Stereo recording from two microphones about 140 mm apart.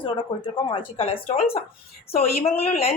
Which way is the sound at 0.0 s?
35° left (ahead or behind).